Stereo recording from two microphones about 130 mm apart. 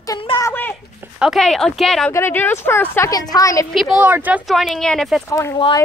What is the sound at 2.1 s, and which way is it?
A woman's voice, 15° left (ahead or behind).